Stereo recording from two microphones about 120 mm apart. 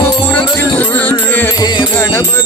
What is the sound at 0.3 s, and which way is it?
Music, 15° left (ahead or behind).